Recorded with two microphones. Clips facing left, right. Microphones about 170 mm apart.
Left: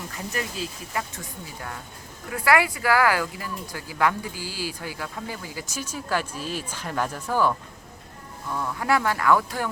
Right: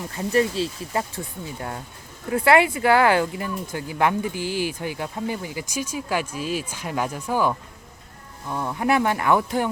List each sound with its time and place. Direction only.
0.1 s speech: 30° right (ahead or behind)